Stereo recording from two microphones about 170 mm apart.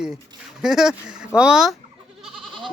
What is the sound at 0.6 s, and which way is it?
Speech, 5° right (ahead or behind).